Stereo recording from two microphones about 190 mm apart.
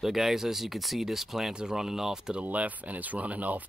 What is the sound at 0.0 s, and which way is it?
Speech, centre (ahead or behind).